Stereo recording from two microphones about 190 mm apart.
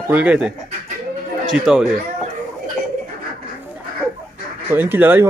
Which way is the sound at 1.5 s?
5° right (ahead or behind).